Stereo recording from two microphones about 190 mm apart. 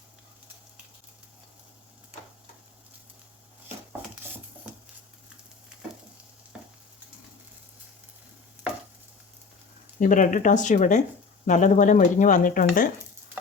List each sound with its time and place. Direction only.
10.0 s speech: 45° left (ahead or behind)